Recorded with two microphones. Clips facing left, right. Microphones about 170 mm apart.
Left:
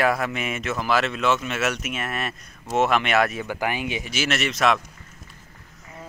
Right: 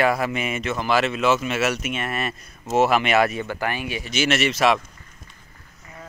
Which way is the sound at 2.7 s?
Centre (ahead or behind).